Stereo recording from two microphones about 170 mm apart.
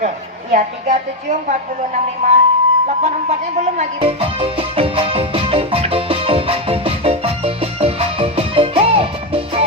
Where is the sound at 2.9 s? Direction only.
40° right (ahead or behind).